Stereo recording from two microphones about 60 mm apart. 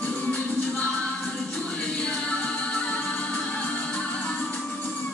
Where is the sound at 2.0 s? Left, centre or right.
Centre.